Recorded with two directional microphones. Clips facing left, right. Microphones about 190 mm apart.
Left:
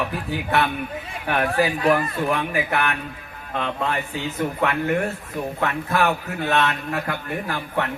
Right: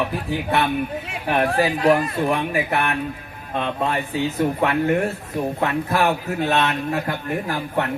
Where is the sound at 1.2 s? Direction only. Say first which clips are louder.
Right 2 dB; 30° right (ahead or behind).